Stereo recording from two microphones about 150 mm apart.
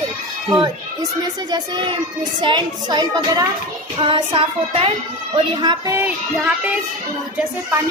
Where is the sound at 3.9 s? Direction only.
35° right (ahead or behind).